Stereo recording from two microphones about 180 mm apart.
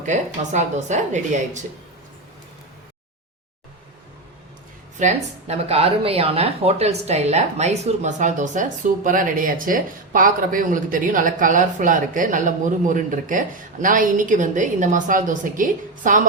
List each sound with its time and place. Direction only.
0.0 s speech: 40° right (ahead or behind)
4.9 s speech: 40° right (ahead or behind)